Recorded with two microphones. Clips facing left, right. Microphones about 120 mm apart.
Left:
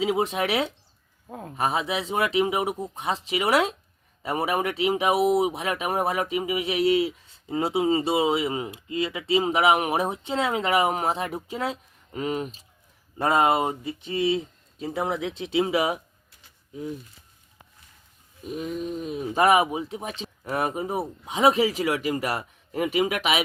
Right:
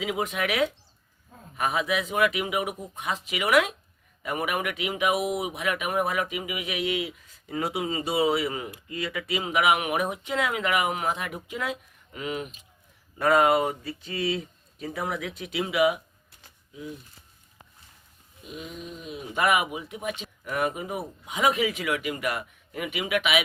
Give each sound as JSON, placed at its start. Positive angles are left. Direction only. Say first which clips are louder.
{"t": 0.0, "sound": "speech", "louder": "left 4 dB", "side_deg": 30}
{"t": 1.3, "sound": "speech", "louder": "left 12 dB", "side_deg": 65}
{"t": 1.5, "sound": "speech", "louder": "left 1 dB", "side_deg": 30}
{"t": 18.4, "sound": "speech", "louder": "left 8 dB", "side_deg": 45}